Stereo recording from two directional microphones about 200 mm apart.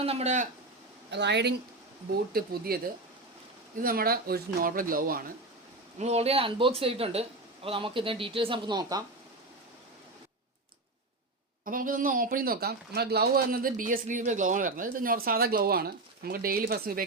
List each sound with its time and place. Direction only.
0.0 s speech: 30° right (ahead or behind)
1.1 s speech: 60° right (ahead or behind)
6.0 s speech: 30° right (ahead or behind)
11.6 s speech: 45° right (ahead or behind)